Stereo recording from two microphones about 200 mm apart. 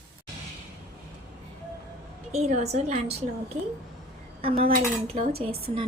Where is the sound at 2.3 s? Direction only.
35° right (ahead or behind).